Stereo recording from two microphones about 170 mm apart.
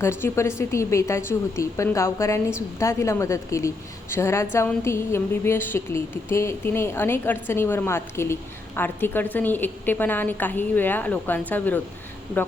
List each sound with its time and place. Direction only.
0.0 s a woman's voice: 15° left (ahead or behind)